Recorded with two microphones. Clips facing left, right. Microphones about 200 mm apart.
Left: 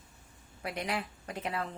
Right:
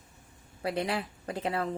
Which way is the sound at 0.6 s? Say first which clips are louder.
Right 5 dB; 30° right (ahead or behind).